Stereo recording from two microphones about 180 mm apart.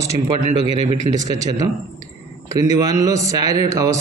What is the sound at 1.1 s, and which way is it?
A man's voice, 20° right (ahead or behind).